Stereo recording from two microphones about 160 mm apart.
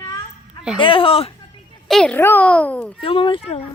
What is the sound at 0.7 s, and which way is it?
Speech, 35° left (ahead or behind).